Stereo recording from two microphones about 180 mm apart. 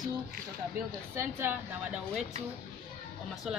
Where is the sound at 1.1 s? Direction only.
15° right (ahead or behind).